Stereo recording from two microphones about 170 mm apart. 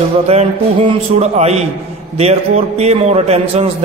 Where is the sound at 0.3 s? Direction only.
35° right (ahead or behind).